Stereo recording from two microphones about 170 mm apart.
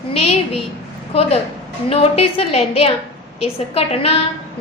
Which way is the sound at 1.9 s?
35° left (ahead or behind).